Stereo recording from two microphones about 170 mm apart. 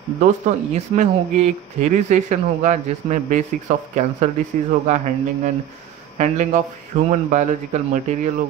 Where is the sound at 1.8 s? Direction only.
45° right (ahead or behind).